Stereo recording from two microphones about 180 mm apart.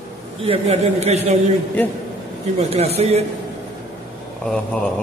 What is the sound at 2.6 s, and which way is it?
Speech, 35° right (ahead or behind).